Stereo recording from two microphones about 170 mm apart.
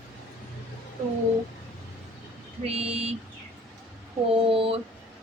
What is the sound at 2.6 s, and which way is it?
Speech, 35° right (ahead or behind).